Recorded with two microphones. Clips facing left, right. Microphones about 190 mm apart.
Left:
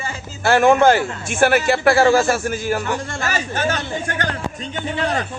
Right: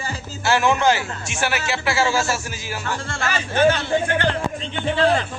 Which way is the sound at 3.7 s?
45° left (ahead or behind).